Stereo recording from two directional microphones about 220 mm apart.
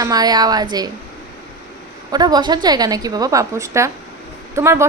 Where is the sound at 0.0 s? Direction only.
15° right (ahead or behind).